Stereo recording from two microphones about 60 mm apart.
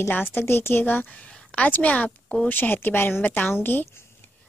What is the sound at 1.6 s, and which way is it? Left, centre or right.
Speech, left.